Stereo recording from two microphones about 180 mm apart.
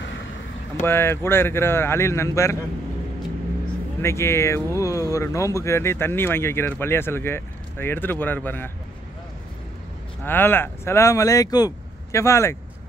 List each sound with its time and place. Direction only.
0.8 s speech: 15° left (ahead or behind)
4.0 s speech: 15° left (ahead or behind)
10.2 s speech: 10° left (ahead or behind)